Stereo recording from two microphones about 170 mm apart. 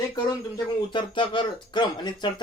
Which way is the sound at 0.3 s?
25° left (ahead or behind).